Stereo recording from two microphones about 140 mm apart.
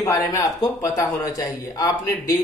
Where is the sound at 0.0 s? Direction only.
25° left (ahead or behind).